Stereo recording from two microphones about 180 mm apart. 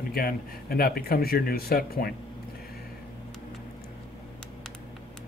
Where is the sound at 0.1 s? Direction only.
55° left (ahead or behind).